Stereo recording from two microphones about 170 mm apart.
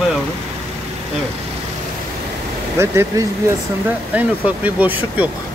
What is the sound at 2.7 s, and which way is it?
Speech, 15° right (ahead or behind).